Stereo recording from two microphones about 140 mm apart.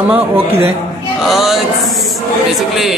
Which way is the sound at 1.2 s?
Centre (ahead or behind).